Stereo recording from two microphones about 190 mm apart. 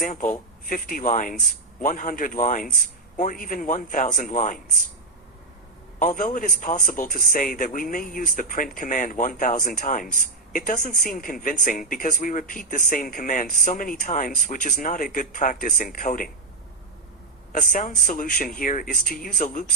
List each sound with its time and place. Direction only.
0.0 s a man's voice: 45° left (ahead or behind)
6.0 s a man's voice: 45° left (ahead or behind)
17.5 s a man's voice: 45° left (ahead or behind)